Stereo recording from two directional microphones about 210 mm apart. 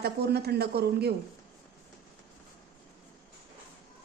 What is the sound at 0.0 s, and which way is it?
A woman's voice, 50° right (ahead or behind).